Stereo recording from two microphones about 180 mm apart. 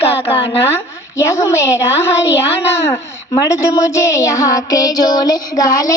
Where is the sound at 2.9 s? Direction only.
20° left (ahead or behind).